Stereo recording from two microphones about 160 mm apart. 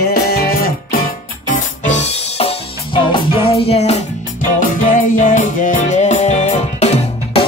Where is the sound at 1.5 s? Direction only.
45° left (ahead or behind).